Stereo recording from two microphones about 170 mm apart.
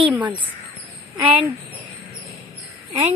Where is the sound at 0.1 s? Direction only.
10° right (ahead or behind).